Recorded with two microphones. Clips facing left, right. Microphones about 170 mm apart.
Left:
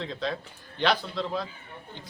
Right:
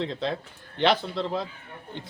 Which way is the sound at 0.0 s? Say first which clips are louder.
Right 3 dB; 20° right (ahead or behind).